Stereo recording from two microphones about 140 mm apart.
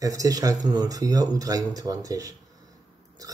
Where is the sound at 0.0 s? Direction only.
25° right (ahead or behind).